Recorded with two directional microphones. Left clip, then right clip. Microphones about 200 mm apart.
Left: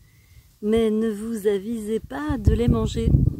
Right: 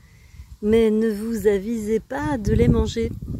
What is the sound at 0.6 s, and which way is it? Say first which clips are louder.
Speech: right 3 dB; 5° left (ahead or behind).